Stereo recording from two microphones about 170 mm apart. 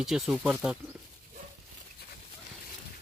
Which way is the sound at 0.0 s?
5° right (ahead or behind).